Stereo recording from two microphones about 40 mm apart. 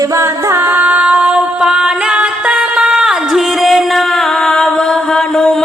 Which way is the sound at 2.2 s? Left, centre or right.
Right.